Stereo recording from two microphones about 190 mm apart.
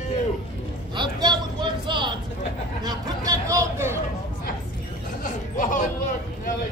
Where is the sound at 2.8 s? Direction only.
20° right (ahead or behind).